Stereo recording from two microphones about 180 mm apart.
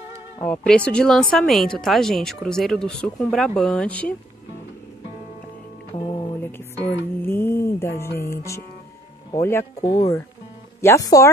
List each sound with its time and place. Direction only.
0.4 s speech: 5° left (ahead or behind)
5.9 s music: 25° left (ahead or behind)
7.2 s music: 10° left (ahead or behind)
9.8 s speech: 20° left (ahead or behind)
10.8 s music: 15° left (ahead or behind)